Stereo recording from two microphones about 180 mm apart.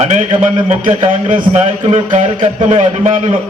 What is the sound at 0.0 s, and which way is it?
A man's voice, 35° right (ahead or behind).